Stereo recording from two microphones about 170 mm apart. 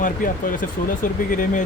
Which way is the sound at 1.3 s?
50° left (ahead or behind).